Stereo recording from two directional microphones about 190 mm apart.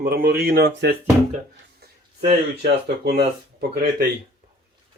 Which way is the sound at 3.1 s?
55° right (ahead or behind).